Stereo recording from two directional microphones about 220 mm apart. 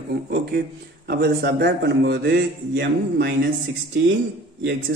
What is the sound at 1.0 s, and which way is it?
Speech, 50° right (ahead or behind).